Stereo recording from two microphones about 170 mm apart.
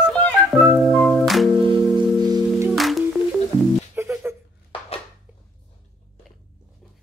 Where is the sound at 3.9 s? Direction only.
15° right (ahead or behind).